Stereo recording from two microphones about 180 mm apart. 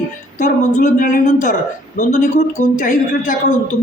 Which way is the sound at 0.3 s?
45° left (ahead or behind).